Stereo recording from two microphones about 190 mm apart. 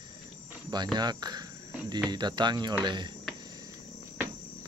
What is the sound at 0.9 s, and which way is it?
Speech, 20° right (ahead or behind).